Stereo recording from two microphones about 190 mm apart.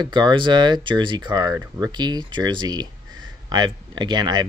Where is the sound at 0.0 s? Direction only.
25° right (ahead or behind).